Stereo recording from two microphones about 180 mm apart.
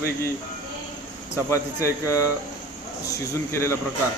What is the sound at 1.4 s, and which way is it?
Speech, 15° left (ahead or behind).